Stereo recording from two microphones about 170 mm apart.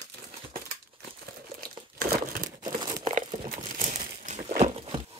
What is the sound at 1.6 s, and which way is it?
Crumpling, 60° right (ahead or behind).